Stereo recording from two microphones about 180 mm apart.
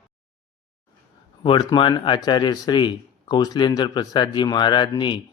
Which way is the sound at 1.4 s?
25° left (ahead or behind).